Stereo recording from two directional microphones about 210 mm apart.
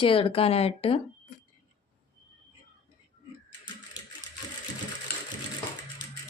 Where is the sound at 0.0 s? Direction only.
25° left (ahead or behind).